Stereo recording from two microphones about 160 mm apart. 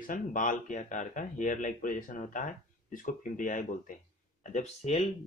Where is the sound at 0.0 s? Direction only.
55° left (ahead or behind).